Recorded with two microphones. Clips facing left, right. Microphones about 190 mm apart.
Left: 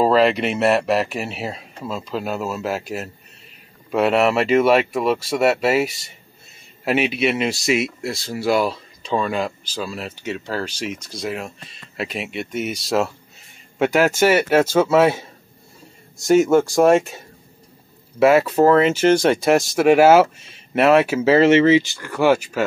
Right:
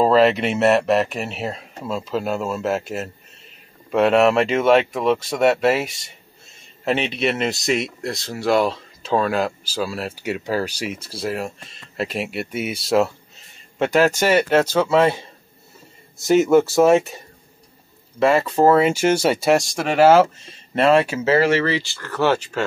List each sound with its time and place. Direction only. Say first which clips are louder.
0.0 s speech: right 1 dB; centre (ahead or behind)
13.7 s a man's voice: left 1 dB; 10° left (ahead or behind)
18.2 s speech: left 2 dB; 5° left (ahead or behind)
18.7 s speech: even; 10° right (ahead or behind)
21.3 s a man's voice: left 6 dB; 20° left (ahead or behind)